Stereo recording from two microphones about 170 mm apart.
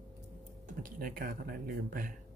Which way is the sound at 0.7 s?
55° right (ahead or behind).